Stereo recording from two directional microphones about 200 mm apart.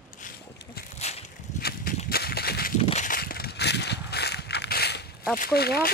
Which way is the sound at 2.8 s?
35° left (ahead or behind).